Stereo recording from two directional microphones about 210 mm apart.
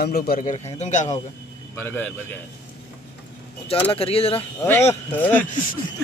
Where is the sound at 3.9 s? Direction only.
25° left (ahead or behind).